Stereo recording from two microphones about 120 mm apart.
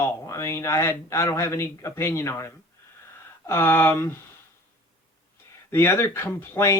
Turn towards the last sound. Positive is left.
turn(degrees=20)  # may be behind; listen again after turning